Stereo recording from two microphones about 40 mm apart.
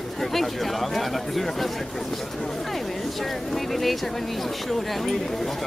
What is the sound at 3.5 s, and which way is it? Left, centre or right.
Speech, centre.